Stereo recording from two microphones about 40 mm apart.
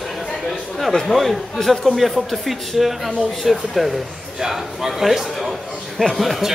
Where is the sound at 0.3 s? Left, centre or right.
Centre.